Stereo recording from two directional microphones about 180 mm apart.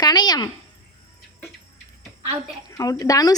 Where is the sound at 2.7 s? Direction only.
20° left (ahead or behind).